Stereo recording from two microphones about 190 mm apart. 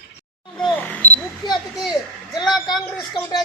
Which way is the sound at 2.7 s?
25° left (ahead or behind).